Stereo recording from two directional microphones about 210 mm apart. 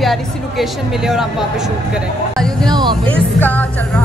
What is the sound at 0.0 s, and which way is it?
A woman's voice, centre (ahead or behind).